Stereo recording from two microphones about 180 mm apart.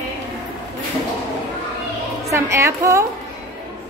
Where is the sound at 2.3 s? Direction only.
15° right (ahead or behind).